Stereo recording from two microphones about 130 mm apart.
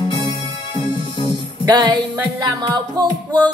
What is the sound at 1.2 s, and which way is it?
Music, 35° right (ahead or behind).